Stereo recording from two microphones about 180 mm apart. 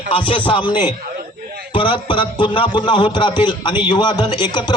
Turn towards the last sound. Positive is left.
turn(degrees=25)  # may be behind; listen again after turning